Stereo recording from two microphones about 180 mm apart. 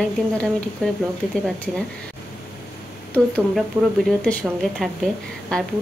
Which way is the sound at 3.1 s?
5° left (ahead or behind).